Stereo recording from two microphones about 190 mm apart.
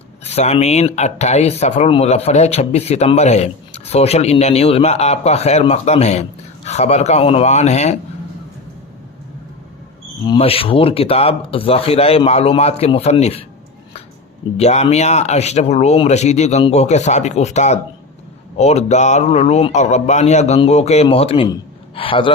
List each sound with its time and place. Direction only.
0.3 s speech: 35° left (ahead or behind)
10.2 s speech: 30° left (ahead or behind)
14.6 s speech: 35° left (ahead or behind)